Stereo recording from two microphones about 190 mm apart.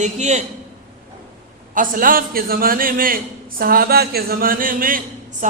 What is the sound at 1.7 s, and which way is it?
A man's voice, 45° right (ahead or behind).